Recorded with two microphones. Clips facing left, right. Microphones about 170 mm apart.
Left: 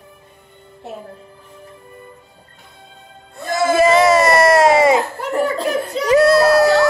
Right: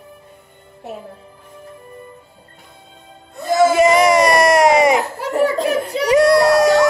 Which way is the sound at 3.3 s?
20° right (ahead or behind).